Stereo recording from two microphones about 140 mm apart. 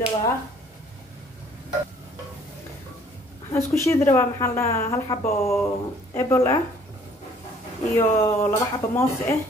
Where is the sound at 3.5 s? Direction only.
20° left (ahead or behind).